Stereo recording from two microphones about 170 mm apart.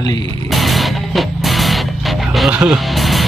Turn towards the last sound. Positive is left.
turn(degrees=0)  # may be behind; listen again after turning